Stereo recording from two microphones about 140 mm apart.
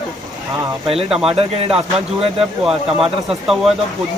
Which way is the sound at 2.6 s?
Centre (ahead or behind).